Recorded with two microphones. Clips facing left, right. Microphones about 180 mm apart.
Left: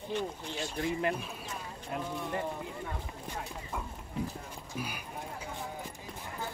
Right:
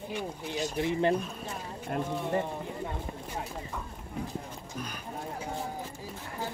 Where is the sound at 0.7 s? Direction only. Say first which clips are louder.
Right 4 dB; 25° right (ahead or behind).